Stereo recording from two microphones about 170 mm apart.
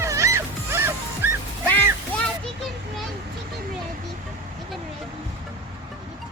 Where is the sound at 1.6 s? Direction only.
10° left (ahead or behind).